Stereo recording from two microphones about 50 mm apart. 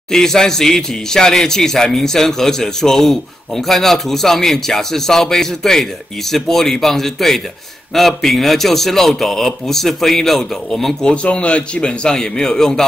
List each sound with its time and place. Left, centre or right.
0.1 s a man's voice: centre
11.1 s a man's voice: left